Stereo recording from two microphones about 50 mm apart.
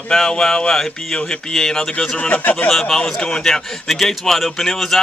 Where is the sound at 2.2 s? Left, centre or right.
Left.